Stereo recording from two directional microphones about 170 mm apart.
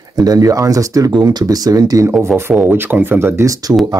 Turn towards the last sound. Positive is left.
turn(degrees=-20)  # may be behind; listen again after turning